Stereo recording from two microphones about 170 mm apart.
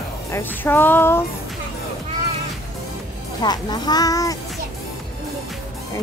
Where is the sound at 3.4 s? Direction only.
25° left (ahead or behind).